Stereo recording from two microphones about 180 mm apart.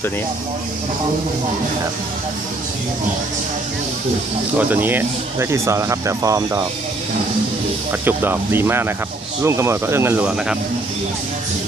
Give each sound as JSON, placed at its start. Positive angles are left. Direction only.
{"t": 4.6, "sound": "speech", "side_deg": -10}
{"t": 7.9, "sound": "speech", "side_deg": -10}